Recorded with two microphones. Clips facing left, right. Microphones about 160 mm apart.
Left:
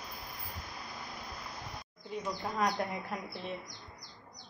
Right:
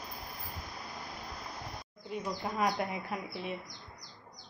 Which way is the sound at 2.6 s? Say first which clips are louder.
Even; 5° right (ahead or behind).